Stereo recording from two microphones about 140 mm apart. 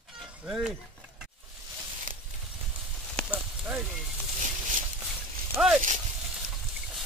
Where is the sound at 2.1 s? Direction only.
70° right (ahead or behind).